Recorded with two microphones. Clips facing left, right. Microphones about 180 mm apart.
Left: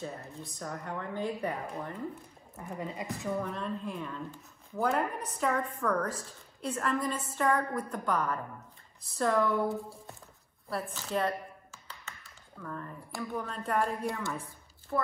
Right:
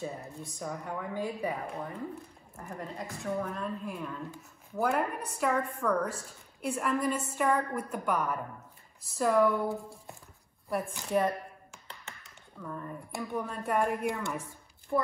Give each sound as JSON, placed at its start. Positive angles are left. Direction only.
{"t": 0.6, "sound": "a woman's voice", "side_deg": -10}
{"t": 10.7, "sound": "a woman's voice", "side_deg": -15}
{"t": 11.1, "sound": "a sound", "side_deg": -15}
{"t": 12.1, "sound": "tap", "side_deg": -15}
{"t": 13.4, "sound": "a woman's voice", "side_deg": -15}